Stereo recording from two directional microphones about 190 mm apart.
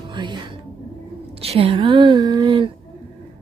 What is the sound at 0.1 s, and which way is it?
A woman's voice, 25° right (ahead or behind).